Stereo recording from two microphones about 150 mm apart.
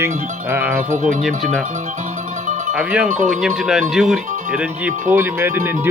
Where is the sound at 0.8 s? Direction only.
60° right (ahead or behind).